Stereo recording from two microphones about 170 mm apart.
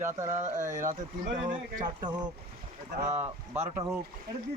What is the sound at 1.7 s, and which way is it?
Speech, 25° right (ahead or behind).